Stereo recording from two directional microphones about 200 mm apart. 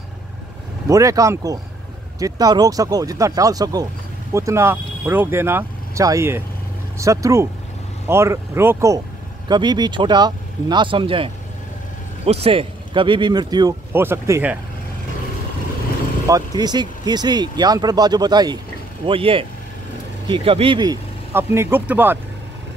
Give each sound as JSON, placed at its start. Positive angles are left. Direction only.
{"t": 0.8, "sound": "speech", "side_deg": -15}
{"t": 16.3, "sound": "speech", "side_deg": -20}